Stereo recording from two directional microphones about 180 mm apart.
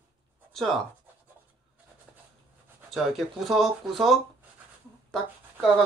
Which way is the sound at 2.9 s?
Centre (ahead or behind).